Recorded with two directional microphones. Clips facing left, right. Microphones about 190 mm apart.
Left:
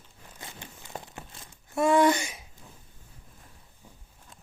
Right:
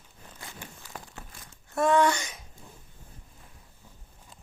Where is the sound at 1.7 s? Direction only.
10° left (ahead or behind).